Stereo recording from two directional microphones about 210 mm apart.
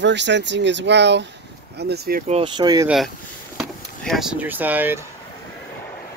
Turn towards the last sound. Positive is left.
turn(degrees=-10)  # may be behind; listen again after turning